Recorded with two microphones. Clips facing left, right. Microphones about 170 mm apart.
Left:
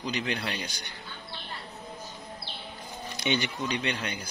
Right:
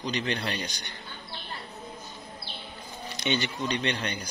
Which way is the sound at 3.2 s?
10° left (ahead or behind).